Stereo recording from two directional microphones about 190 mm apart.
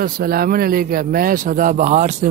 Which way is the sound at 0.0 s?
50° right (ahead or behind).